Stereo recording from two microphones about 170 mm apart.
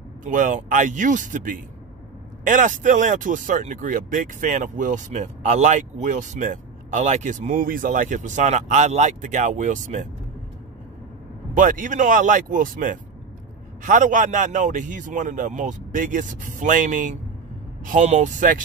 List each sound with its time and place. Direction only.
0.2 s speech: 50° right (ahead or behind)
11.5 s speech: 50° right (ahead or behind)